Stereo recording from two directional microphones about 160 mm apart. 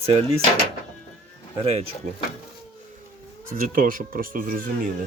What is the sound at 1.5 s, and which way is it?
Speech, 40° right (ahead or behind).